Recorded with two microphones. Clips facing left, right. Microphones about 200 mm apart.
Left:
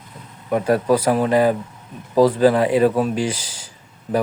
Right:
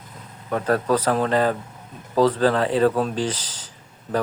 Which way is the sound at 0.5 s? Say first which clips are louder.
Left 4 dB; 10° left (ahead or behind).